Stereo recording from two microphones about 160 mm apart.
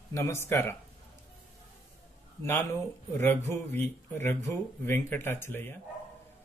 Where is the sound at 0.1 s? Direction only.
15° left (ahead or behind).